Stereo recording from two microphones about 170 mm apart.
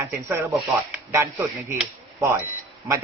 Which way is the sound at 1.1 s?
15° right (ahead or behind).